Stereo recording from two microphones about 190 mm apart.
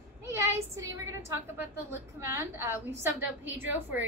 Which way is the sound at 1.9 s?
10° right (ahead or behind).